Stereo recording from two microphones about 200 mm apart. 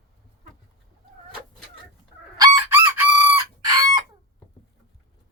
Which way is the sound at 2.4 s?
15° right (ahead or behind).